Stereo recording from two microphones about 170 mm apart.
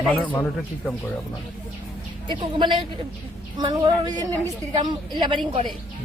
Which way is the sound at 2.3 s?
25° right (ahead or behind).